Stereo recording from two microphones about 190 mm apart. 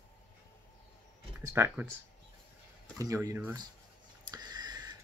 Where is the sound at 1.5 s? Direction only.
10° right (ahead or behind).